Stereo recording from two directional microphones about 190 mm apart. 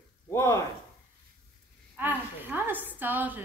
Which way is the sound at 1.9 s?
10° right (ahead or behind).